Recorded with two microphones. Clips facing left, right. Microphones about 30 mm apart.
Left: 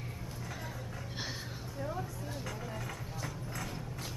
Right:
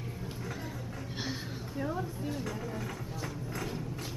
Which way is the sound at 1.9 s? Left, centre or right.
Centre.